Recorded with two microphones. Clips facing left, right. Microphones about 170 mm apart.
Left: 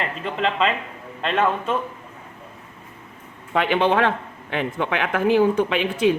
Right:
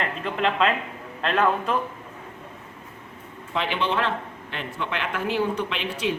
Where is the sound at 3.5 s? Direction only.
55° left (ahead or behind).